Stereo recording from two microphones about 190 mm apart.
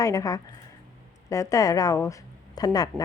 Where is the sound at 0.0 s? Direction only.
15° left (ahead or behind).